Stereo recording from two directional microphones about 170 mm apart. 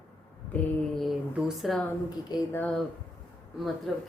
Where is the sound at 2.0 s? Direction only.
25° left (ahead or behind).